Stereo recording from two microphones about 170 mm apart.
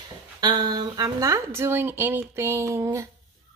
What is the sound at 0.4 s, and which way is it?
A woman's voice, 25° right (ahead or behind).